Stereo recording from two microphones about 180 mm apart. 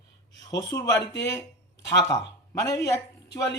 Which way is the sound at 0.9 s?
75° left (ahead or behind).